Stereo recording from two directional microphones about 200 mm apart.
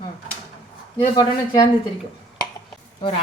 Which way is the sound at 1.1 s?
25° left (ahead or behind).